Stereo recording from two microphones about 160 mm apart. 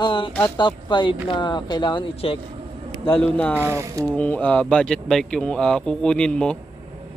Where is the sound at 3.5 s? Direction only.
15° right (ahead or behind).